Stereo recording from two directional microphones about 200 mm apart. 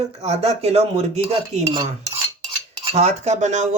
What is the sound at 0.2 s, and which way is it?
Cutlery, 30° right (ahead or behind).